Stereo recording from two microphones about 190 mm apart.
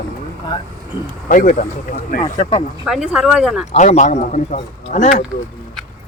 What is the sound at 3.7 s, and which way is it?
Speech, 40° left (ahead or behind).